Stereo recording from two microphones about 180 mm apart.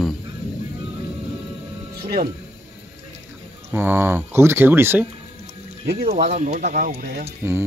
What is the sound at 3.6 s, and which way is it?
Speech, 10° right (ahead or behind).